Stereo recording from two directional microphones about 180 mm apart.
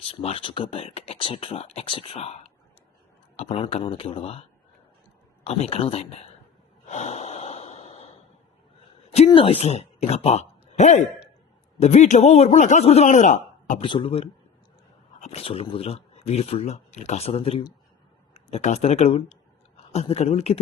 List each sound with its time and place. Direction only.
0.0 s speech: 35° left (ahead or behind)
6.8 s snort: 40° left (ahead or behind)
9.0 s a woman's voice: 35° left (ahead or behind)
13.8 s speech: 30° left (ahead or behind)